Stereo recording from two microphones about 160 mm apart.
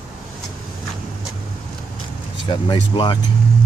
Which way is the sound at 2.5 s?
30° left (ahead or behind).